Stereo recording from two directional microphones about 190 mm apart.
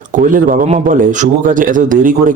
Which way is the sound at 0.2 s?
45° right (ahead or behind).